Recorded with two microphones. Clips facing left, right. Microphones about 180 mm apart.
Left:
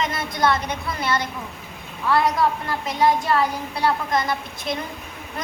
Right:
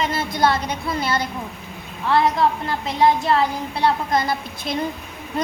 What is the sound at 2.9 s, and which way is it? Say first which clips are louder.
Child singing: right 2 dB; 25° right (ahead or behind).